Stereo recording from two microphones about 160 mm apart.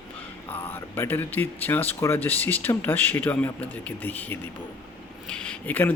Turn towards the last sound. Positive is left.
turn(degrees=10)  # may be behind; listen again after turning